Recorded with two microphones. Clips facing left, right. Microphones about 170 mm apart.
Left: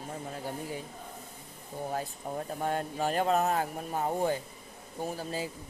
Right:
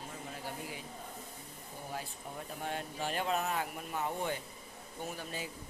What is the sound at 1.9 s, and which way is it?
Speech, 50° left (ahead or behind).